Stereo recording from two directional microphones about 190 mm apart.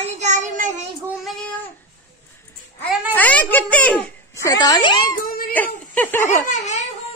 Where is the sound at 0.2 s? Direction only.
40° right (ahead or behind).